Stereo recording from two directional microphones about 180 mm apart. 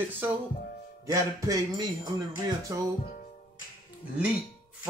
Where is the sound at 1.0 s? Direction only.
20° right (ahead or behind).